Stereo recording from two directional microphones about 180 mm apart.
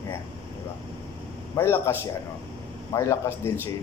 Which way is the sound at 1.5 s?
15° left (ahead or behind).